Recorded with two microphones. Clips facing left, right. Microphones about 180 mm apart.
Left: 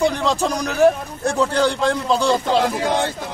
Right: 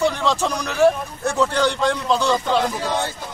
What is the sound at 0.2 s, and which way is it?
A man's voice, 35° left (ahead or behind).